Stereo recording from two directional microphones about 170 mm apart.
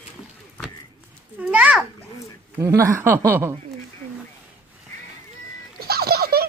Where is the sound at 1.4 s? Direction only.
10° right (ahead or behind).